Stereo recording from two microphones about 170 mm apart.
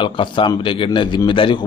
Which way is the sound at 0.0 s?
30° left (ahead or behind).